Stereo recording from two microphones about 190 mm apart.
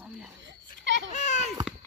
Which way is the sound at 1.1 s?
40° left (ahead or behind).